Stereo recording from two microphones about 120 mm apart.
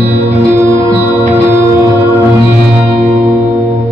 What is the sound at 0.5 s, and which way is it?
Music, 20° right (ahead or behind).